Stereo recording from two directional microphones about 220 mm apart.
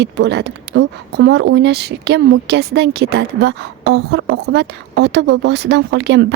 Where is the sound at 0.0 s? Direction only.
50° right (ahead or behind).